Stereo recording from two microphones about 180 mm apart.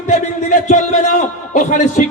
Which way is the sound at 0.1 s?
45° left (ahead or behind).